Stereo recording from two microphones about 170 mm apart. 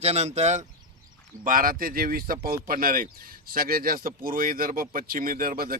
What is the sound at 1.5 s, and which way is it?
A man's voice, 55° right (ahead or behind).